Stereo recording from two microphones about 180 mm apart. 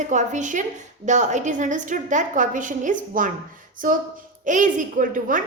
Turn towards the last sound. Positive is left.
turn(degrees=-45)  # may be behind; listen again after turning